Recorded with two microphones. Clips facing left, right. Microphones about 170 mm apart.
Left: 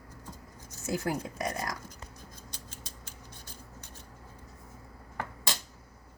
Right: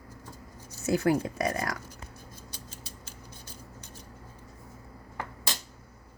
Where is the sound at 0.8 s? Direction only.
65° right (ahead or behind).